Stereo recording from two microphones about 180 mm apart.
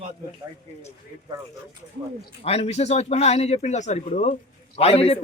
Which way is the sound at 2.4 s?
35° left (ahead or behind).